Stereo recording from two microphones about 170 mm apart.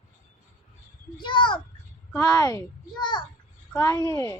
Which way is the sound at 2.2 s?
20° left (ahead or behind).